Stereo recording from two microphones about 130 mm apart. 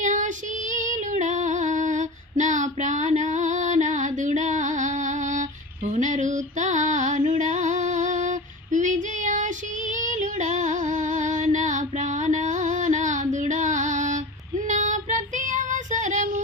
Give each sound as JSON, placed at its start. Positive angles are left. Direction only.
{"t": 0.0, "sound": "female singing", "side_deg": -70}
{"t": 14.7, "sound": "child singing", "side_deg": -70}